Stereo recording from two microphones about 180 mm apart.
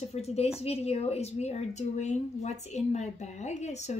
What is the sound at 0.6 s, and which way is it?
A woman's voice, 35° left (ahead or behind).